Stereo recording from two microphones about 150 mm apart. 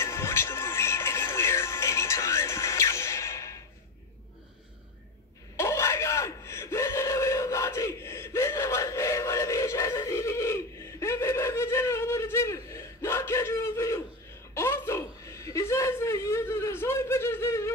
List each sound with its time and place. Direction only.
0.0 s music: 15° left (ahead or behind)
5.6 s gasp: 20° left (ahead or behind)
14.5 s a sound: 20° left (ahead or behind)